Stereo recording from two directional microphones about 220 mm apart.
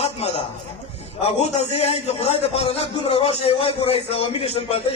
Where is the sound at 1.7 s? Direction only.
30° left (ahead or behind).